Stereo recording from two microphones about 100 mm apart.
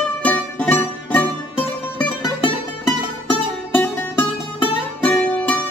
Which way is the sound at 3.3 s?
20° left (ahead or behind).